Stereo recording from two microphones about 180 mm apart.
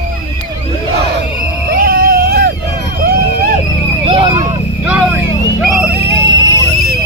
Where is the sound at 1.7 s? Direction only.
55° right (ahead or behind).